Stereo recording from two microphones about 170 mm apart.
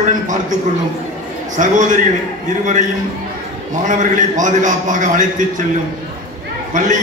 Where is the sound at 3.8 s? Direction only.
50° right (ahead or behind).